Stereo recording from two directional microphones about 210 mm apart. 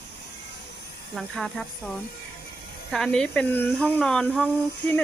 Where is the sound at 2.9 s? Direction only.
5° left (ahead or behind).